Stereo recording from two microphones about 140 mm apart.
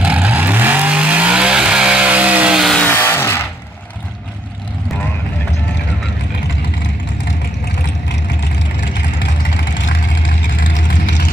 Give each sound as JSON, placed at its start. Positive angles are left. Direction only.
{"t": 0.0, "sound": "vehicle", "side_deg": -10}
{"t": 2.8, "sound": "vehicle", "side_deg": 15}